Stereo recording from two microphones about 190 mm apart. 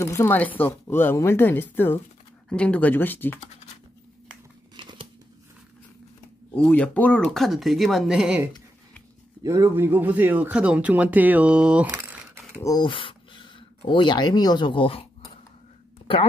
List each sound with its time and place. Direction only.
0.0 s speech: 15° left (ahead or behind)
4.7 s a sound: 25° right (ahead or behind)
6.5 s speech: 10° left (ahead or behind)
9.4 s a man's voice: 15° right (ahead or behind)
11.9 s crumpling: 15° right (ahead or behind)
12.6 s speech: 25° left (ahead or behind)